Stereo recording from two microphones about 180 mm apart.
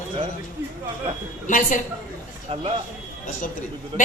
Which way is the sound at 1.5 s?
45° left (ahead or behind).